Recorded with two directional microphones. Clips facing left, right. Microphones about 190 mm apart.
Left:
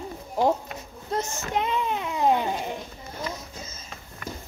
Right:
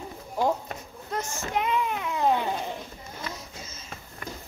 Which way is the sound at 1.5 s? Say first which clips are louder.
Left 1 dB; 25° left (ahead or behind).